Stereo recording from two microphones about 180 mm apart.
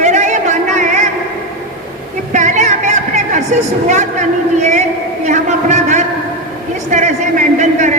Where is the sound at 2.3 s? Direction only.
40° right (ahead or behind).